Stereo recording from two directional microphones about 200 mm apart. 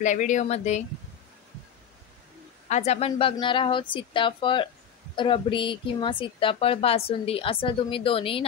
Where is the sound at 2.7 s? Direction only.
35° left (ahead or behind).